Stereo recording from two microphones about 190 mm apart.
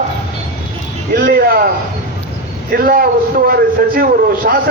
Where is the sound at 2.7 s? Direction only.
50° right (ahead or behind).